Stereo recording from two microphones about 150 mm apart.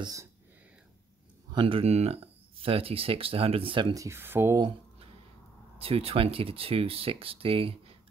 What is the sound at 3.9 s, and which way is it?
Speech, 20° right (ahead or behind).